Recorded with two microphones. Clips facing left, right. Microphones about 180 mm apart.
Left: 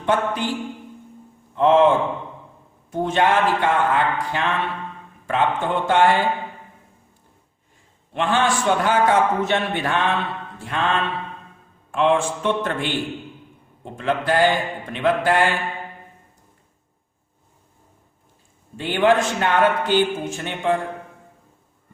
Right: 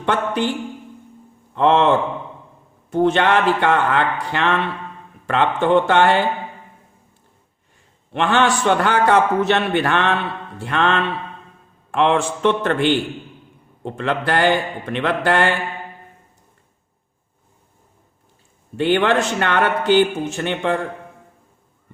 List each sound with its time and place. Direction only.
0.0 s a man's voice: 70° right (ahead or behind)
1.5 s a man's voice: 70° right (ahead or behind)
2.9 s a man's voice: 70° right (ahead or behind)
8.1 s a man's voice: 70° right (ahead or behind)
18.8 s a man's voice: 70° right (ahead or behind)